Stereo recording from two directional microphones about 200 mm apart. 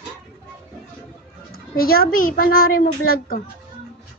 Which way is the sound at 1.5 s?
50° left (ahead or behind).